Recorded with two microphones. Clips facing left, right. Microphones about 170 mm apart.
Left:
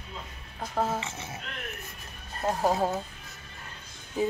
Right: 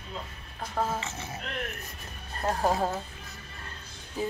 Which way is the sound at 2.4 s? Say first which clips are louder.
Left 1 dB; 5° left (ahead or behind).